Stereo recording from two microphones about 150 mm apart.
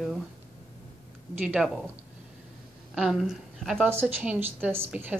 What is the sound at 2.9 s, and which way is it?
Speech, centre (ahead or behind).